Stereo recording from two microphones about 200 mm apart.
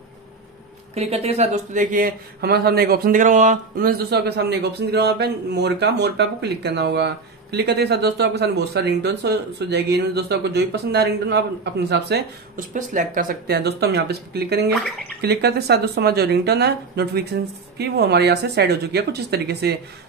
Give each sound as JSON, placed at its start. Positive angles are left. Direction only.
{"t": 0.9, "sound": "speech", "side_deg": -30}
{"t": 12.5, "sound": "speech", "side_deg": -40}